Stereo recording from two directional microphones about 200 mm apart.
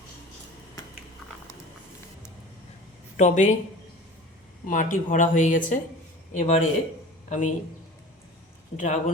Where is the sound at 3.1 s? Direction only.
35° left (ahead or behind).